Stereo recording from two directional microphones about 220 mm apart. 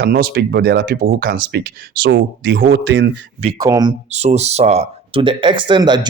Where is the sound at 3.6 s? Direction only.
15° right (ahead or behind).